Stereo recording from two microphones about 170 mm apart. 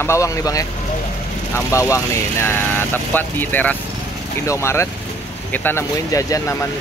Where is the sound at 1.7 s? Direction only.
15° left (ahead or behind).